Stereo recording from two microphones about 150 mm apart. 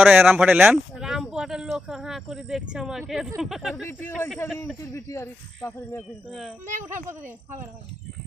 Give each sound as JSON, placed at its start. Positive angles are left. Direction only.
{"t": 0.0, "sound": "speech", "side_deg": -5}
{"t": 3.8, "sound": "speech", "side_deg": 15}
{"t": 7.1, "sound": "speech", "side_deg": -15}